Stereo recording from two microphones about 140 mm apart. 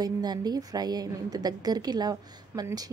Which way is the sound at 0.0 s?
30° right (ahead or behind).